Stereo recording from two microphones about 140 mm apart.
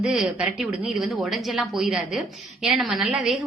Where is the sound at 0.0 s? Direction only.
5° right (ahead or behind).